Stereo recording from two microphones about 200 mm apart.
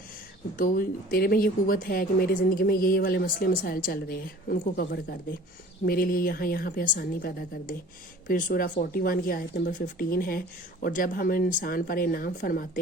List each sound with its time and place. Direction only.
0.5 s speech: 45° left (ahead or behind)